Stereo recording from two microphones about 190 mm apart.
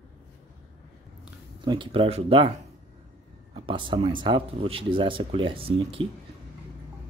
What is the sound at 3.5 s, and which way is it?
Speech, 25° right (ahead or behind).